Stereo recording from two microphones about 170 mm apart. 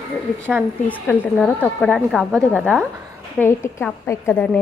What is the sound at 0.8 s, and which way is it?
Speech, 10° left (ahead or behind).